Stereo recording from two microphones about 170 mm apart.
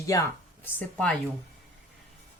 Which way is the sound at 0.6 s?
10° left (ahead or behind).